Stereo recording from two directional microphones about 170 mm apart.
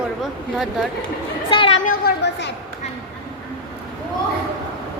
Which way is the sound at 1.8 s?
75° left (ahead or behind).